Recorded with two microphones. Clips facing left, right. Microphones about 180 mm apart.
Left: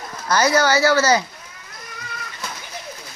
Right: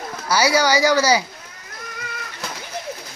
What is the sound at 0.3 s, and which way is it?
Speech, 10° right (ahead or behind).